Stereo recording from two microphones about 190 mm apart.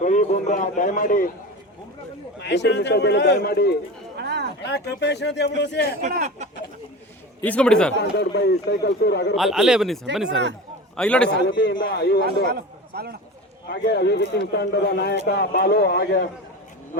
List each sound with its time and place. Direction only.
0.0 s a man's voice: 40° left (ahead or behind)
2.4 s a man's voice: 65° left (ahead or behind)
4.2 s a sound: 60° right (ahead or behind)
4.6 s a man's voice: 60° left (ahead or behind)
7.4 s speech: 5° left (ahead or behind)
8.1 s a man's voice: 60° left (ahead or behind)
9.3 s speech: centre (ahead or behind)
10.2 s speech: 70° right (ahead or behind)
10.9 s speech: 5° left (ahead or behind)
11.3 s a man's voice: 65° left (ahead or behind)
11.8 s a man's voice: 60° left (ahead or behind)
12.2 s a man's voice: 55° right (ahead or behind)
13.7 s a man's voice: 60° left (ahead or behind)